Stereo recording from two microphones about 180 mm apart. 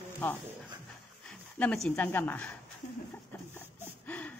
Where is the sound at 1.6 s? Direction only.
5° left (ahead or behind).